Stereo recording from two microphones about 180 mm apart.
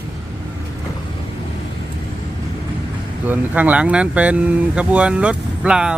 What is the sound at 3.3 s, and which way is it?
Speech, 10° right (ahead or behind).